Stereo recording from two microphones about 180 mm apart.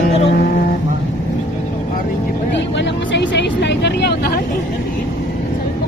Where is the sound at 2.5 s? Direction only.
80° left; by 4.4 s 60° left (ahead or behind).